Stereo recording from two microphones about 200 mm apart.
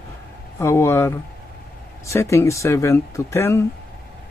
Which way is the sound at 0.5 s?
15° left (ahead or behind).